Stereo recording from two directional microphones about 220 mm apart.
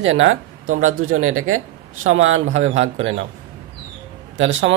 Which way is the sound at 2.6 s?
30° right (ahead or behind).